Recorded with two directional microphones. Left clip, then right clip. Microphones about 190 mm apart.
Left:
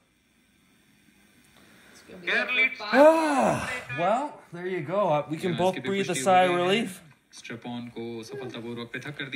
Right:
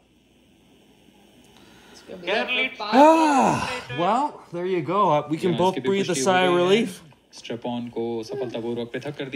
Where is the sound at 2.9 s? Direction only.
Centre (ahead or behind).